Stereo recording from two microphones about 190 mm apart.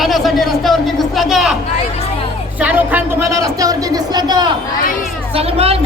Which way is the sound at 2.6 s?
10° right (ahead or behind).